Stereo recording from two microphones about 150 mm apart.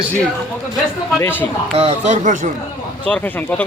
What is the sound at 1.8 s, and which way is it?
Speech, 45° right (ahead or behind).